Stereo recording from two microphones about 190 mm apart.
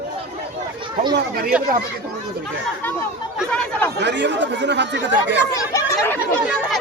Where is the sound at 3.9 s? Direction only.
65° right (ahead or behind).